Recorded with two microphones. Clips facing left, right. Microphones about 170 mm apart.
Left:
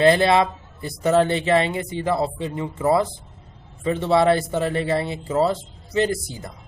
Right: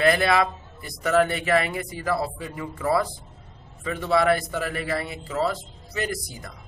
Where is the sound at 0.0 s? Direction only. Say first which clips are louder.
Left 4 dB; 25° left (ahead or behind).